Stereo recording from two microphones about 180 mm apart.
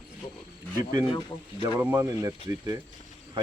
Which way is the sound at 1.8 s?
15° right (ahead or behind).